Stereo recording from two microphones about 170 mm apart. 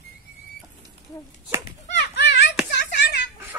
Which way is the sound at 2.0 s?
90° left.